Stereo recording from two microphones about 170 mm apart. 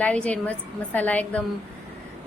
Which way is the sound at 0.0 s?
10° left (ahead or behind).